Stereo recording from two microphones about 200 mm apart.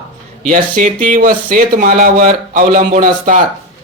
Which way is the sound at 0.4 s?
40° right (ahead or behind).